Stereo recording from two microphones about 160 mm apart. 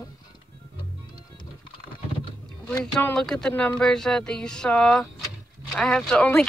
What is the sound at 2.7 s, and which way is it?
Speech, 5° left (ahead or behind).